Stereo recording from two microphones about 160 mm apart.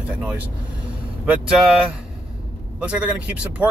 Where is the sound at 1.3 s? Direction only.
5° right (ahead or behind).